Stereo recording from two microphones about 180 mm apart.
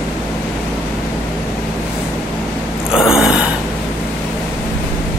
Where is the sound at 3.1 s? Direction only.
5° right (ahead or behind).